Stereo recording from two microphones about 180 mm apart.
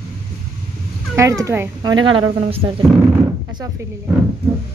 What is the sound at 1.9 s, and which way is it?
Speech, 25° right (ahead or behind).